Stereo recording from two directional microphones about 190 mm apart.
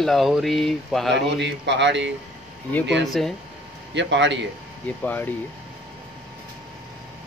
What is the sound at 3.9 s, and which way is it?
Speech, 70° right (ahead or behind).